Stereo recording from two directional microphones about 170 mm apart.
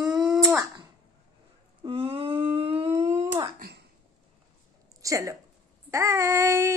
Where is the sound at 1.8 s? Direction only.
35° right (ahead or behind).